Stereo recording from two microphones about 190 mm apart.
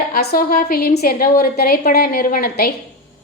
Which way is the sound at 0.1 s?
55° left (ahead or behind).